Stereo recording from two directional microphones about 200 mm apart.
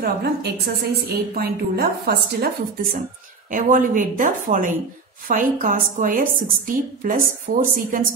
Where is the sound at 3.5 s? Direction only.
40° right (ahead or behind).